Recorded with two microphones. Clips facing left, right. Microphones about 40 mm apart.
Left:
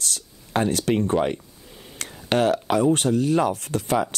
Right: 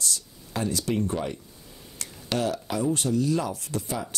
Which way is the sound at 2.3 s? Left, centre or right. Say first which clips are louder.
Left 7 dB; left.